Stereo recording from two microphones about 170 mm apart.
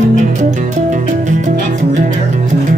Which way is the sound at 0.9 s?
45° right (ahead or behind).